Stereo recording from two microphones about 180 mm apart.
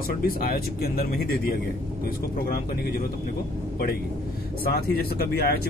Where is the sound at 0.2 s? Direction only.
55° left (ahead or behind).